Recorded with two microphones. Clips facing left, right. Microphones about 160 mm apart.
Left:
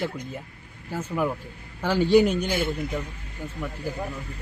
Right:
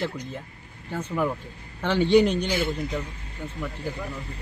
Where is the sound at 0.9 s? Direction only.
5° left (ahead or behind).